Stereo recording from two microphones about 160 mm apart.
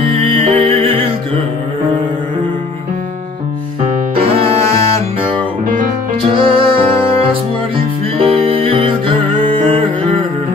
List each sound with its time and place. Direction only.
0.1 s music: 35° right (ahead or behind)
4.1 s music: 35° right (ahead or behind)
6.3 s music: 35° right (ahead or behind)